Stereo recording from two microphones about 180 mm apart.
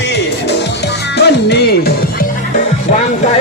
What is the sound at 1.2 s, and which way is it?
Music, 70° left (ahead or behind).